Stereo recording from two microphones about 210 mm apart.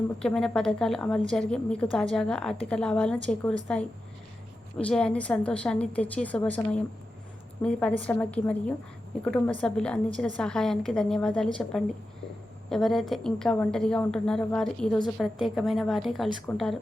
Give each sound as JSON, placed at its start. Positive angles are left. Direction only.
{"t": 0.2, "sound": "a woman's voice", "side_deg": 5}